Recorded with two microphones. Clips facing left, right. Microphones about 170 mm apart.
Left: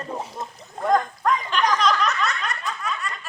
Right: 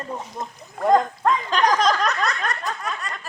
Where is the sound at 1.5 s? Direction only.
40° right (ahead or behind).